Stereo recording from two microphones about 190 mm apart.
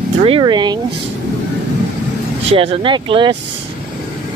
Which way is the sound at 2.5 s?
30° right (ahead or behind).